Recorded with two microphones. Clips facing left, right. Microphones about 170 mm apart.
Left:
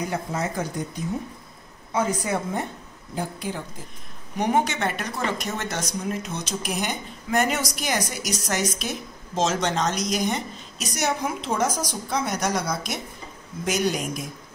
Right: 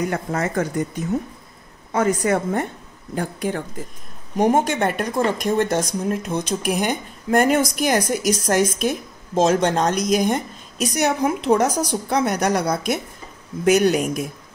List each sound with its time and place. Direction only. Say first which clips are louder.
0.1 s a woman's voice: right 4 dB; 60° right (ahead or behind)
2.0 s a woman's voice: right 6 dB; 65° right (ahead or behind)